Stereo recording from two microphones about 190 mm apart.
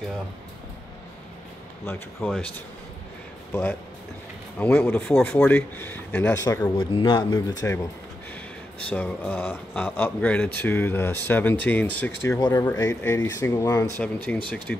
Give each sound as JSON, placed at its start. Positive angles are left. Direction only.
{"t": 2.2, "sound": "speech", "side_deg": 5}
{"t": 3.5, "sound": "speech", "side_deg": 15}
{"t": 6.8, "sound": "speech", "side_deg": 25}
{"t": 8.8, "sound": "speech", "side_deg": 5}